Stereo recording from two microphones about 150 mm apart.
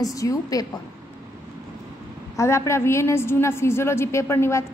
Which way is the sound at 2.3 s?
20° left (ahead or behind).